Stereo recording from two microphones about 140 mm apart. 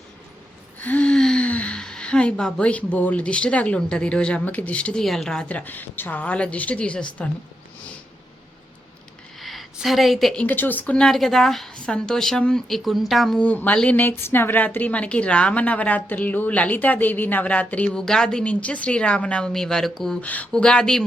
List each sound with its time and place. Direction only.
0.8 s speech: 10° left (ahead or behind)
9.4 s a sound: centre (ahead or behind)
10.4 s speech: 15° left (ahead or behind)